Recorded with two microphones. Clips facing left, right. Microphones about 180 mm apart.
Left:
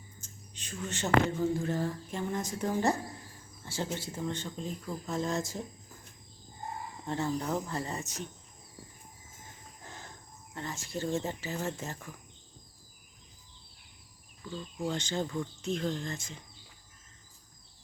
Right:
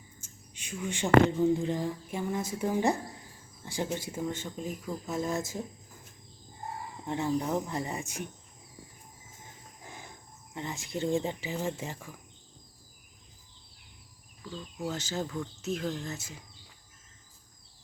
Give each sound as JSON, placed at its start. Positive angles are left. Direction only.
{"t": 0.2, "sound": "a sound", "side_deg": -10}
{"t": 1.4, "sound": "speech", "side_deg": -15}
{"t": 3.6, "sound": "a sound", "side_deg": -15}
{"t": 3.9, "sound": "speech", "side_deg": -10}
{"t": 7.1, "sound": "speech", "side_deg": -15}
{"t": 9.8, "sound": "speech", "side_deg": -10}
{"t": 14.6, "sound": "speech", "side_deg": -5}